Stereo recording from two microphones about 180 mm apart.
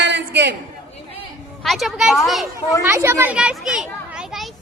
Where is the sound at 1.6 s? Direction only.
Centre (ahead or behind).